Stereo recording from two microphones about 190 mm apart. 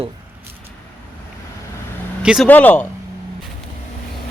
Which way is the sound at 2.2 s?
5° right (ahead or behind).